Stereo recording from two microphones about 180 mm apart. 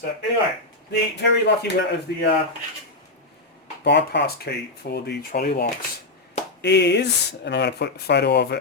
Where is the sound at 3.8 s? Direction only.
70° left (ahead or behind).